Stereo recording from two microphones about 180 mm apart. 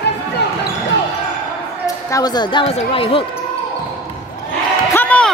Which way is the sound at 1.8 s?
20° left (ahead or behind).